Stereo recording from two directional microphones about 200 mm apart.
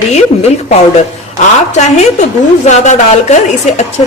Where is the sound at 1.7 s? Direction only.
35° left (ahead or behind).